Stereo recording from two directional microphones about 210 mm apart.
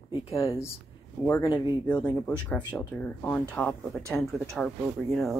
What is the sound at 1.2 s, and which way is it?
Speech, 10° left (ahead or behind).